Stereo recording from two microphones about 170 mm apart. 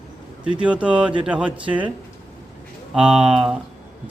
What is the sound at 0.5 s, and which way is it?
Speech, 5° right (ahead or behind).